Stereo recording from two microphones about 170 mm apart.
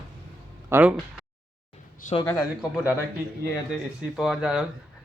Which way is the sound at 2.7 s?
10° right (ahead or behind).